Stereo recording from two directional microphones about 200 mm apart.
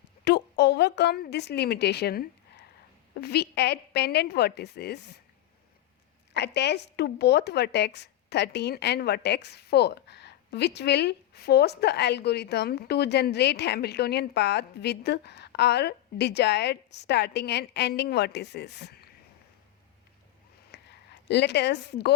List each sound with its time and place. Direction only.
0.3 s a woman's voice: 55° left (ahead or behind)
6.3 s speech: 55° left (ahead or behind)
20.7 s a sound: 55° left (ahead or behind)
21.2 s speech: 55° left (ahead or behind)